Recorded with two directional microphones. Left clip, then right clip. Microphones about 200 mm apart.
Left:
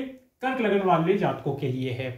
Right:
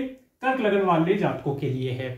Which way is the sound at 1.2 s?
25° left (ahead or behind).